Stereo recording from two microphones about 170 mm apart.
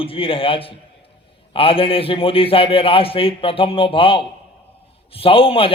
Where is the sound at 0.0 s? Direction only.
30° left (ahead or behind).